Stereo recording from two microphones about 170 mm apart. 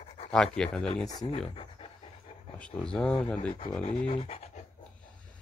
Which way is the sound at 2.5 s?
5° left (ahead or behind).